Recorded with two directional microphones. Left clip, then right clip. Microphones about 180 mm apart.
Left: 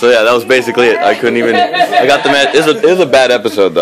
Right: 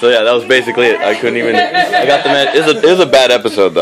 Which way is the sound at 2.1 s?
30° left (ahead or behind).